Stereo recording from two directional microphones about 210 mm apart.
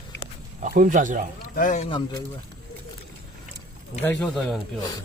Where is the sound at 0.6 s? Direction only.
40° right (ahead or behind).